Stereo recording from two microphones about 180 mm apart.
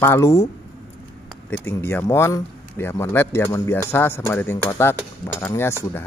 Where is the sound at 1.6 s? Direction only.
10° left (ahead or behind).